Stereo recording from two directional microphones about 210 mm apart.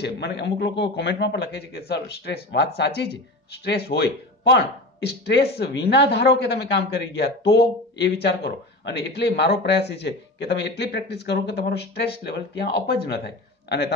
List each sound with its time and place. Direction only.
0.0 s speech: 55° left (ahead or behind)